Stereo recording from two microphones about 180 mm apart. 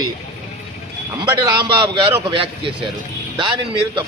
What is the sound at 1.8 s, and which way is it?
Speech, 30° right (ahead or behind).